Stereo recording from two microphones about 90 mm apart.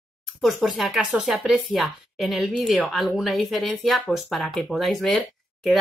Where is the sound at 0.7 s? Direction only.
5° right (ahead or behind).